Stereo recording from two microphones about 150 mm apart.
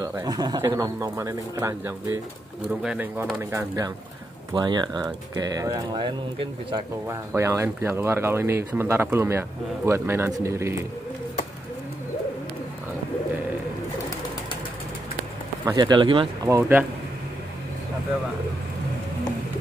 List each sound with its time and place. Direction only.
0.0 s speech: 25° right (ahead or behind)
2.7 s speech: 5° right (ahead or behind)
3.5 s speech: 25° right (ahead or behind)
7.1 s speech: 20° right (ahead or behind)
15.6 s speech: 25° right (ahead or behind)
16.4 s speech: 15° right (ahead or behind)